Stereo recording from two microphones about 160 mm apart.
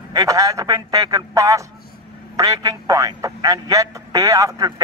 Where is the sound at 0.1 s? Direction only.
20° right (ahead or behind).